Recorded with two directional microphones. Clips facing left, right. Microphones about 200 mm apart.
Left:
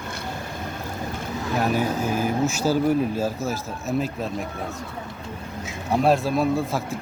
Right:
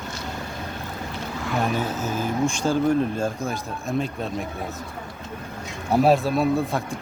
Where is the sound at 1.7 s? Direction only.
10° left (ahead or behind).